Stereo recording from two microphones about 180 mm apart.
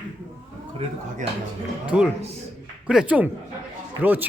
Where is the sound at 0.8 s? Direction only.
35° right (ahead or behind).